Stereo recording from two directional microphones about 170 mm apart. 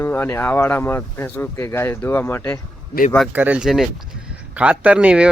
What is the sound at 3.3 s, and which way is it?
Speech, 10° right (ahead or behind).